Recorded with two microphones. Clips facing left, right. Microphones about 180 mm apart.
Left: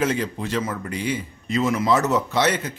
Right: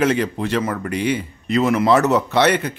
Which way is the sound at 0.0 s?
70° right (ahead or behind).